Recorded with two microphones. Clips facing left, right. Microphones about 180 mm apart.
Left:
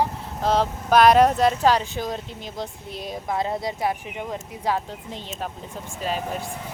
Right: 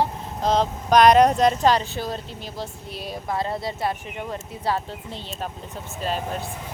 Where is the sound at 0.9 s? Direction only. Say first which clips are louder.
Right 1 dB; 5° left (ahead or behind).